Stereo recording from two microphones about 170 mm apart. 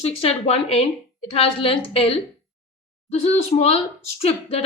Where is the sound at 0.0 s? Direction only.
35° left (ahead or behind).